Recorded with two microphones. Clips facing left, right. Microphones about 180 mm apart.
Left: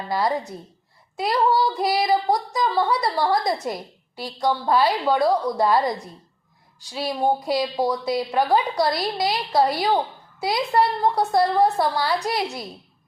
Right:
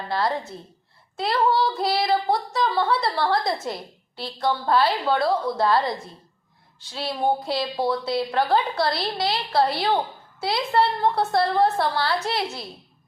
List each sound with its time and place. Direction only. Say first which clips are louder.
0.1 s speech: left 2 dB; 15° left (ahead or behind)